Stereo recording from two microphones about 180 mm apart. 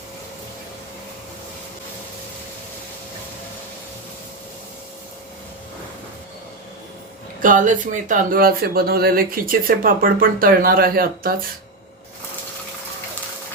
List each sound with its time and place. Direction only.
7.4 s speech: 45° right (ahead or behind)